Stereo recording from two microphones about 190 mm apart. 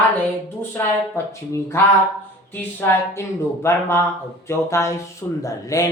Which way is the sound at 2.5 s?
10° left (ahead or behind).